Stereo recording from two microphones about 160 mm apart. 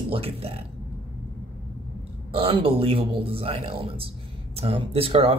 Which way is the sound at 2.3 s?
35° right (ahead or behind).